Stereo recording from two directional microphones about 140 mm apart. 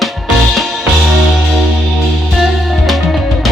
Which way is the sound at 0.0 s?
Centre (ahead or behind).